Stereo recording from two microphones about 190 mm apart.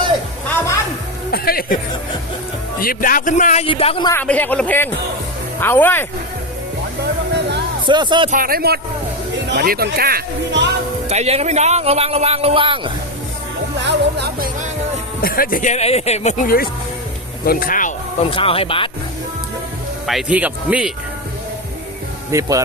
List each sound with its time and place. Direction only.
1.3 s speech: 50° left (ahead or behind)
2.8 s a man's voice: 50° left (ahead or behind); by 4.1 s 30° left (ahead or behind)
4.1 s speech: 10° left (ahead or behind)
7.0 s music: 65° right (ahead or behind)
7.9 s speech: 25° right (ahead or behind)
8.3 s speech: 50° right (ahead or behind)
11.1 s speech: 35° right (ahead or behind)
13.7 s music: 65° right (ahead or behind); by 14.7 s 50° right (ahead or behind)
15.2 s a man's voice: 50° left (ahead or behind)
17.4 s speech: 50° left (ahead or behind)
18.2 s speech: 30° left (ahead or behind)
20.1 s speech: 5° right (ahead or behind)
22.3 s speech: 15° right (ahead or behind)